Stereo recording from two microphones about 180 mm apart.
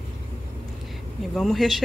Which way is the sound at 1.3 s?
Centre (ahead or behind).